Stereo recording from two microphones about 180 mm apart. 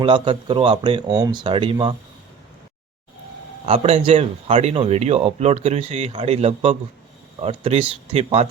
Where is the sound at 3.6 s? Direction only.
35° right (ahead or behind).